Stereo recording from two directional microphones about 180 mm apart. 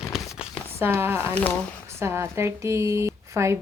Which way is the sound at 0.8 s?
15° right (ahead or behind).